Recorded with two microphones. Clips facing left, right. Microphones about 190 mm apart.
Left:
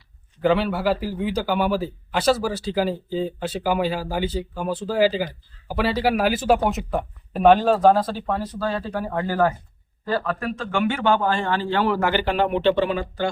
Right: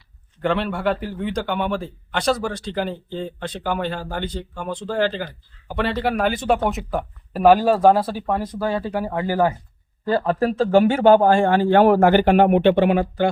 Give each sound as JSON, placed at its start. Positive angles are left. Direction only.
{"t": 0.4, "sound": "a man's voice", "side_deg": 0}
{"t": 10.1, "sound": "a man's voice", "side_deg": -25}